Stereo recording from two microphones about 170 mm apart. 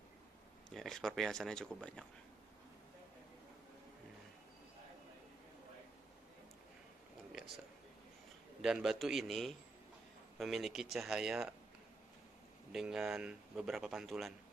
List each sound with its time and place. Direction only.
0.7 s speech: 5° left (ahead or behind)
8.5 s speech: 5° right (ahead or behind)
12.7 s speech: 5° right (ahead or behind)